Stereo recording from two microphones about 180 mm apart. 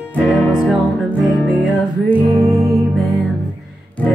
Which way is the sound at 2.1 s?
15° right (ahead or behind).